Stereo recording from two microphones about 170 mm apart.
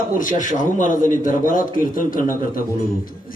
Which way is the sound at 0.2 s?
50° left (ahead or behind).